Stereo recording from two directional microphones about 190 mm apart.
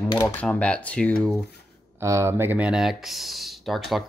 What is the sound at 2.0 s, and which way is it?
Speech, 15° right (ahead or behind).